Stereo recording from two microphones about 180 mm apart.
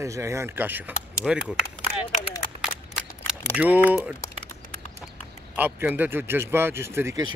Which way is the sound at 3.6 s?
10° right (ahead or behind).